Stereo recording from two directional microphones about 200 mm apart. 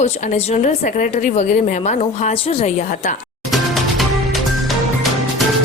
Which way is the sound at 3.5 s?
Centre (ahead or behind).